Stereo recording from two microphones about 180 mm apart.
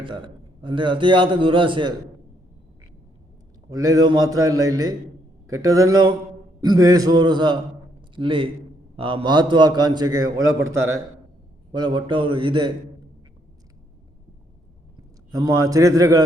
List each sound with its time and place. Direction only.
0.0 s a man's voice: 25° right (ahead or behind)
3.7 s a man's voice: 20° right (ahead or behind)
14.9 s a man's voice: 20° right (ahead or behind)